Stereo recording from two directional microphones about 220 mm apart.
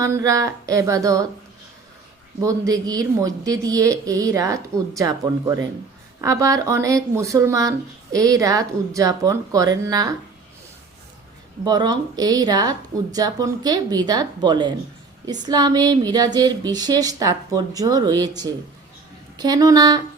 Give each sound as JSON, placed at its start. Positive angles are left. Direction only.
{"t": 0.0, "sound": "speech", "side_deg": -15}
{"t": 2.4, "sound": "speech", "side_deg": -15}
{"t": 11.6, "sound": "speech", "side_deg": -20}